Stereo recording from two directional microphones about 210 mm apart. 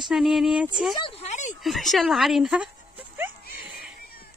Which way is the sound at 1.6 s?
Centre (ahead or behind).